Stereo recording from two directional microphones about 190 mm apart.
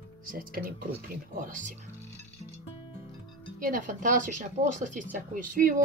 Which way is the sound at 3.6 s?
45° right (ahead or behind).